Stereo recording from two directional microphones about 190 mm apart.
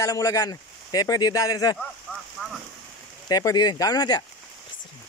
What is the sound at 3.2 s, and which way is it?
Speech, 20° left (ahead or behind).